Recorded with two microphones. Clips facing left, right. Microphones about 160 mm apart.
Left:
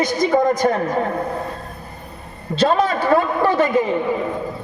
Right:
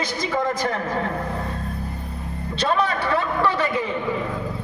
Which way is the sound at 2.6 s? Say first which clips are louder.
Left 5 dB; 50° left (ahead or behind).